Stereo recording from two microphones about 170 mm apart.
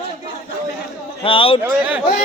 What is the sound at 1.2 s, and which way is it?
Speech, 30° left (ahead or behind).